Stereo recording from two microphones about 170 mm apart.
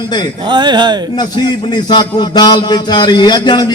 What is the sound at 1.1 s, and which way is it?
A man's voice, 25° left (ahead or behind).